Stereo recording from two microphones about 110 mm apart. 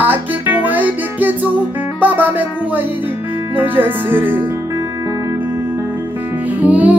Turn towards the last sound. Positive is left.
turn(degrees=-15)  # may be behind; listen again after turning